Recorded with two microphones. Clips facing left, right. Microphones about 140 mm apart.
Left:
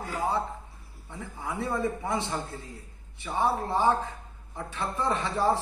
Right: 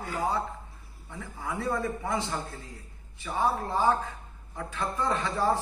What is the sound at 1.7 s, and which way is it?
A man's voice, 20° left (ahead or behind).